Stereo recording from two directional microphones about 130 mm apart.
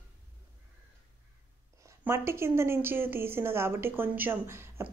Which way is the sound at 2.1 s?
20° right (ahead or behind).